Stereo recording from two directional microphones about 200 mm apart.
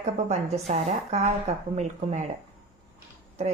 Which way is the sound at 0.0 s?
35° right (ahead or behind).